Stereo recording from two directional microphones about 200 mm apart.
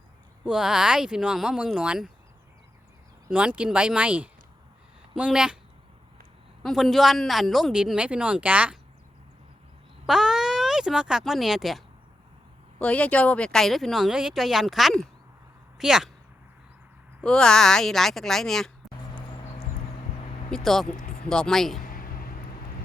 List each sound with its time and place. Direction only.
0.4 s speech: 5° right (ahead or behind)
3.2 s speech: 5° right (ahead or behind)
6.6 s speech: centre (ahead or behind)
10.1 s speech: centre (ahead or behind)
12.8 s speech: 5° left (ahead or behind)
17.2 s speech: 5° left (ahead or behind)
20.5 s speech: centre (ahead or behind)
21.8 s a sound: 45° left (ahead or behind)